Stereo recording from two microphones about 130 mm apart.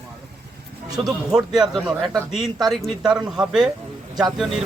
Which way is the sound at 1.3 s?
5° right (ahead or behind).